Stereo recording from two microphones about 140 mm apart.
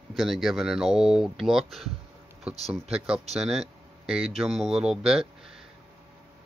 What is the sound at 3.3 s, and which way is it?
Speech, centre (ahead or behind).